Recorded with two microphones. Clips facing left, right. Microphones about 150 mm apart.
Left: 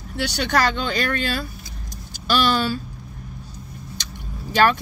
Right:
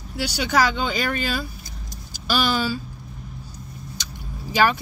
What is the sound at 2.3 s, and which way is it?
Speech, 65° left (ahead or behind).